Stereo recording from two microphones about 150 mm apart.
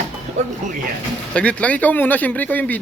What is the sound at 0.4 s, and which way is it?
Speech, 50° right (ahead or behind).